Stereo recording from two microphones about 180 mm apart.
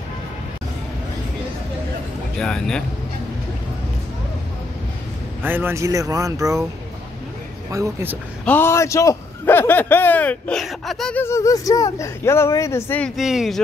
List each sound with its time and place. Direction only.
2.3 s speech: 5° left (ahead or behind)
5.4 s speech: 10° right (ahead or behind)
7.7 s speech: 15° right (ahead or behind)
8.5 s a man's voice: 15° left (ahead or behind)
11.2 s a man's voice: 15° left (ahead or behind)
13.1 s speech: centre (ahead or behind)